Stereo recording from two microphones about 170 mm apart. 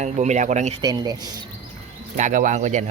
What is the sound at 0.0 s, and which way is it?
Speech, 45° right (ahead or behind).